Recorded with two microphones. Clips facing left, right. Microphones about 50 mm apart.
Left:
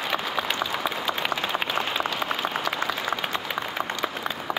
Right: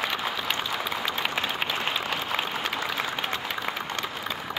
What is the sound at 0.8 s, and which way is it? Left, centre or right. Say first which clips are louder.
Applause: left 2 dB; centre.